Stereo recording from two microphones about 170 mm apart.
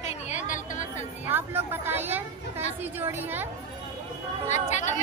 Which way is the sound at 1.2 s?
10° right (ahead or behind).